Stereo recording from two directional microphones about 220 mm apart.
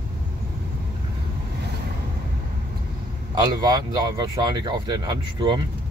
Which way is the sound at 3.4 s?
20° right (ahead or behind).